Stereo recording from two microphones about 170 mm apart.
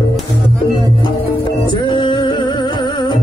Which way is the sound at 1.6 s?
25° left (ahead or behind).